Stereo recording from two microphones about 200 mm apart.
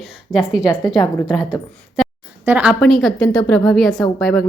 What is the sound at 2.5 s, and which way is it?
A woman's voice, 5° right (ahead or behind).